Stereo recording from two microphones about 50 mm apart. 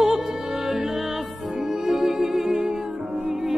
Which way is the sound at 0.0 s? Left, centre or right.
Centre.